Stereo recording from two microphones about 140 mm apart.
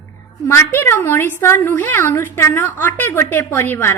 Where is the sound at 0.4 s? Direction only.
20° left (ahead or behind).